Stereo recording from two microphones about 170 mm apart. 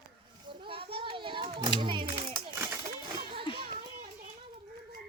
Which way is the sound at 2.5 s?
15° right (ahead or behind).